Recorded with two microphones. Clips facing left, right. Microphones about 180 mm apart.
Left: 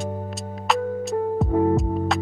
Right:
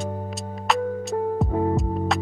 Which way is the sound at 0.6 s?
Centre (ahead or behind).